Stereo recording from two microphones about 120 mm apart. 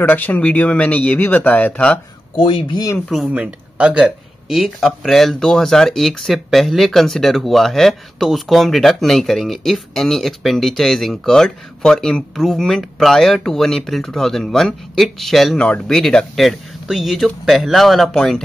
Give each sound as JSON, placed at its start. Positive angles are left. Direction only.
{"t": 0.0, "sound": "speech", "side_deg": 15}
{"t": 2.3, "sound": "speech", "side_deg": 40}
{"t": 3.1, "sound": "speech", "side_deg": -5}